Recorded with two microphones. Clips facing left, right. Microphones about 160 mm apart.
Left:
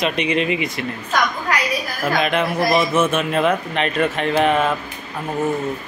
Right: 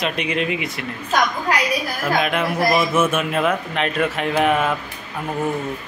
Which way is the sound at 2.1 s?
5° right (ahead or behind).